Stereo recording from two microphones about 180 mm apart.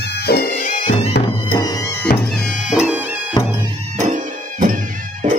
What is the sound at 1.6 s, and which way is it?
Music, 20° left (ahead or behind).